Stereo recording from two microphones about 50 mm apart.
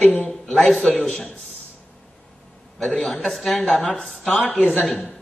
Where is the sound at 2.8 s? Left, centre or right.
Centre.